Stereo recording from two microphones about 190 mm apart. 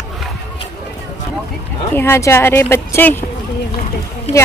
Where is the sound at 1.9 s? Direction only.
10° left (ahead or behind).